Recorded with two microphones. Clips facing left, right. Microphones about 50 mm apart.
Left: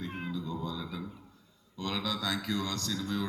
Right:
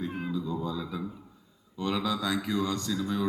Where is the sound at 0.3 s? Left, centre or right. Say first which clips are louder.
Right 4 dB; centre.